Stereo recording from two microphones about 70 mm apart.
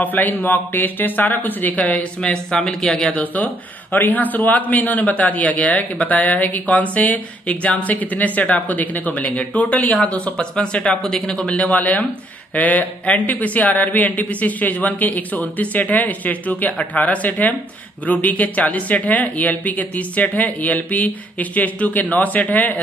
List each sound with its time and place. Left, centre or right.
0.0 s a man's voice: left
2.0 s speech: centre
3.1 s a man's voice: left